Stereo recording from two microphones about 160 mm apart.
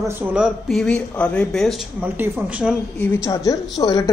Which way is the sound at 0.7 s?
5° left (ahead or behind).